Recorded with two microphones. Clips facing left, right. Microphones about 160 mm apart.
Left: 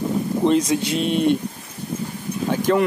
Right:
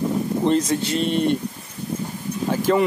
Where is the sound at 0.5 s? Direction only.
10° left (ahead or behind).